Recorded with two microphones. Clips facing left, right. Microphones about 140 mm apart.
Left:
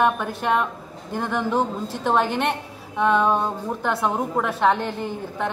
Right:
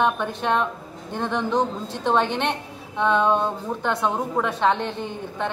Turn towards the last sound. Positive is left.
turn(degrees=5)  # may be behind; listen again after turning